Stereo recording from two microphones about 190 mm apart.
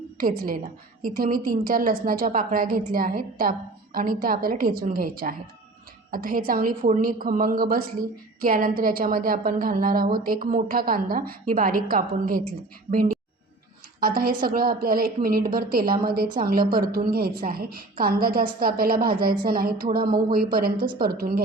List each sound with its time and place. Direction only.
0.2 s a woman's voice: 50° right (ahead or behind)
14.0 s a woman's voice: 50° right (ahead or behind)